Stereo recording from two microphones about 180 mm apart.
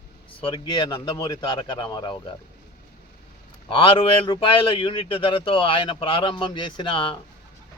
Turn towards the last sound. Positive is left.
turn(degrees=25)  # may be behind; listen again after turning